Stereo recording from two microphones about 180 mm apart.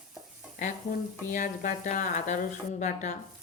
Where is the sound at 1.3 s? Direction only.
45° left (ahead or behind).